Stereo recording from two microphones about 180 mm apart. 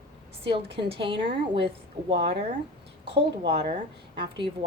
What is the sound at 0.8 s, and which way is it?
A woman's voice, 30° right (ahead or behind).